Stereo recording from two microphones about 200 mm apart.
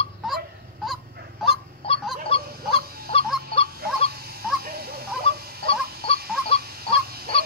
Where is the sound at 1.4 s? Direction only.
25° left (ahead or behind).